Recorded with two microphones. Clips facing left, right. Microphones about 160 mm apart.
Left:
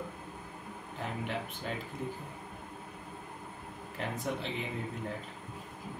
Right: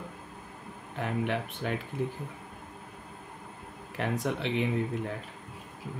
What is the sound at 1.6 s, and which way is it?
Speech, 75° right (ahead or behind).